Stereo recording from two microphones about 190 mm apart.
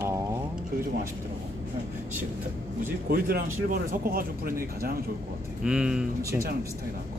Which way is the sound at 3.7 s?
50° right (ahead or behind).